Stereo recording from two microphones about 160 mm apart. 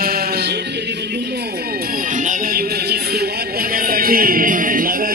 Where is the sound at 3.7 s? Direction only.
65° right (ahead or behind).